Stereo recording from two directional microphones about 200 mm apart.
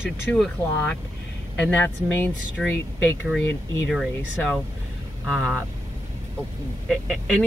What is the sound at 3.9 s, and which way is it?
Speech, centre (ahead or behind).